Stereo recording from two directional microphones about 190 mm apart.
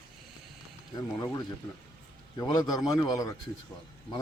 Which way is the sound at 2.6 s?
Centre (ahead or behind).